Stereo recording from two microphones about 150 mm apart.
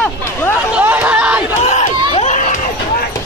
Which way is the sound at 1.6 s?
45° left (ahead or behind).